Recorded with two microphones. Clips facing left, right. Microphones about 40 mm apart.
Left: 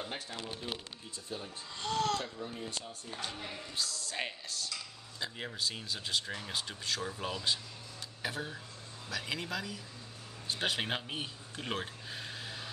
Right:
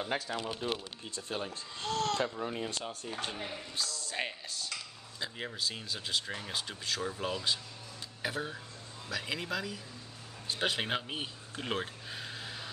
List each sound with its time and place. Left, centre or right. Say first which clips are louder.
0.1 s speech: right 6 dB; right
1.1 s speech: right 5 dB; right
1.8 s a sound: even; centre
2.4 s speech: right 5 dB; right
3.2 s speech: right 1 dB; right
3.7 s speech: even; centre